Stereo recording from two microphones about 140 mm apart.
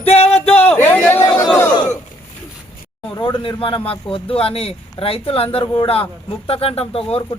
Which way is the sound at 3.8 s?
40° left (ahead or behind).